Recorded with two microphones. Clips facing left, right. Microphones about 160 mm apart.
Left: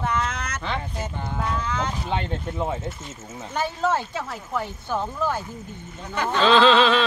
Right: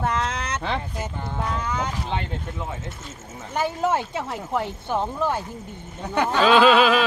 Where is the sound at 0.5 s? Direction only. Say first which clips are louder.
Right 3 dB; 30° right (ahead or behind).